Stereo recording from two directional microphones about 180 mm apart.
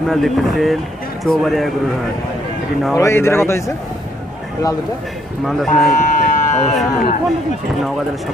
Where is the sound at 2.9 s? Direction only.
15° left (ahead or behind).